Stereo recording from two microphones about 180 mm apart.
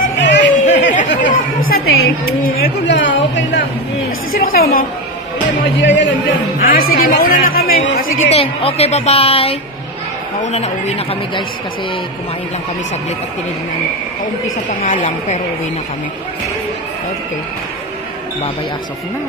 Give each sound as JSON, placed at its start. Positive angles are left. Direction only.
{"t": 0.2, "sound": "a sound", "side_deg": 80}
{"t": 1.2, "sound": "chatter", "side_deg": 50}
{"t": 2.4, "sound": "a sound", "side_deg": 60}
{"t": 4.3, "sound": "chatter", "side_deg": 55}
{"t": 5.8, "sound": "speech", "side_deg": 90}
{"t": 6.6, "sound": "a woman's voice", "side_deg": 55}
{"t": 8.3, "sound": "speech", "side_deg": 35}
{"t": 14.7, "sound": "speech", "side_deg": 40}